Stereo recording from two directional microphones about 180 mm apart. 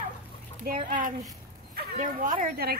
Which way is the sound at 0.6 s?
50° right (ahead or behind).